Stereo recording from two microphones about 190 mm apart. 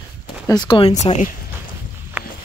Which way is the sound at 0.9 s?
40° left (ahead or behind).